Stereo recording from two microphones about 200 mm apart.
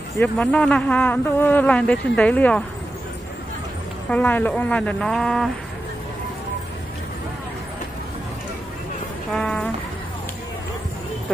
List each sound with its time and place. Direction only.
0.2 s speech: 5° left (ahead or behind)
4.1 s speech: 10° left (ahead or behind)
9.3 s speech: 5° left (ahead or behind)